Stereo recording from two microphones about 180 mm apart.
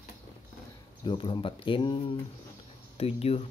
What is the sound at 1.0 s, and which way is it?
Speech, 30° left (ahead or behind).